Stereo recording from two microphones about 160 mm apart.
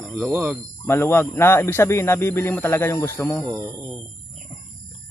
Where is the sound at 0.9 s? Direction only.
15° left (ahead or behind).